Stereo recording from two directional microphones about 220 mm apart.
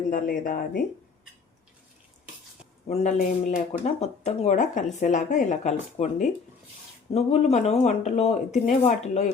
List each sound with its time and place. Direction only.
0.1 s speech: 40° left (ahead or behind)
2.8 s speech: 30° left (ahead or behind)